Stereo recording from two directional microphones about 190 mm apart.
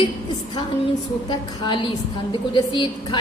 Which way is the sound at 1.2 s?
25° left (ahead or behind).